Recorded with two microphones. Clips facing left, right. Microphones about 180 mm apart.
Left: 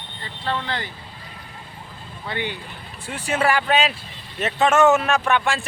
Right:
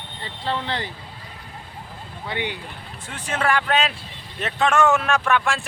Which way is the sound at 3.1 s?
10° left (ahead or behind).